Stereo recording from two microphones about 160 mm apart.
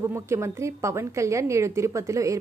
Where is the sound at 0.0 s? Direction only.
15° right (ahead or behind).